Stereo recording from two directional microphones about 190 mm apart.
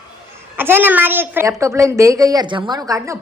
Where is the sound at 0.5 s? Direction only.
10° right (ahead or behind).